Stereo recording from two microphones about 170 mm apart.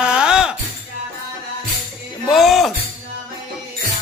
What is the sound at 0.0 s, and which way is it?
Music, 5° right (ahead or behind).